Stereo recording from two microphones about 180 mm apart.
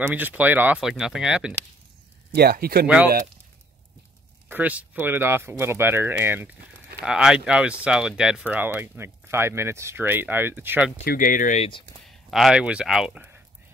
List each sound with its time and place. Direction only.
0.1 s speech: 10° right (ahead or behind)
2.3 s speech: 60° right (ahead or behind)
4.5 s speech: 10° right (ahead or behind)
11.1 s speech: 50° left (ahead or behind)
12.3 s speech: centre (ahead or behind)